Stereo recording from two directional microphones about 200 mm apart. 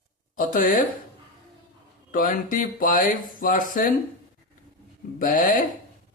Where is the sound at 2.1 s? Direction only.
45° left (ahead or behind).